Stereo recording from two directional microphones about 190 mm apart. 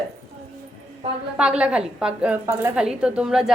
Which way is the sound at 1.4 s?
5° right (ahead or behind).